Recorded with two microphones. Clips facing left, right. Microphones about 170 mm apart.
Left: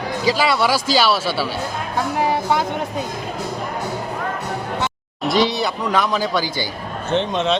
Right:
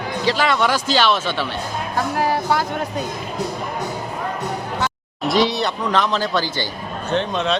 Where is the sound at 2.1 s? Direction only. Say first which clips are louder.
Left 1 dB; 20° left (ahead or behind).